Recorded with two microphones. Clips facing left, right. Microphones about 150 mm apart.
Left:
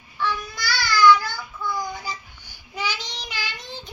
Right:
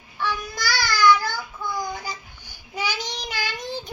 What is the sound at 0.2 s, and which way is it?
Babbling, 15° right (ahead or behind).